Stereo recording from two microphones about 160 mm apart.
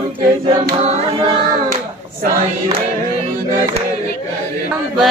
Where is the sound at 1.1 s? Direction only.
30° right (ahead or behind).